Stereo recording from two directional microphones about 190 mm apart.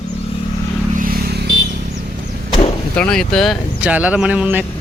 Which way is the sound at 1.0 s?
50° right (ahead or behind).